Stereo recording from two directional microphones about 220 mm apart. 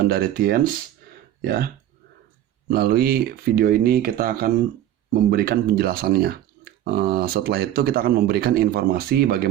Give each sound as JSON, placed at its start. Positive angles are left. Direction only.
{"t": 0.0, "sound": "speech", "side_deg": -40}